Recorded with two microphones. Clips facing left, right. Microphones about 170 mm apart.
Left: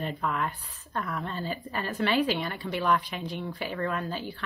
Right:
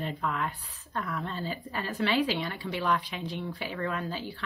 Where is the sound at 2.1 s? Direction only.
50° left (ahead or behind).